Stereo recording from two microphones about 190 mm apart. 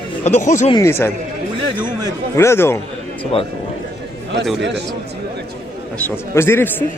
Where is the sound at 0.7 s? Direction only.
15° left (ahead or behind).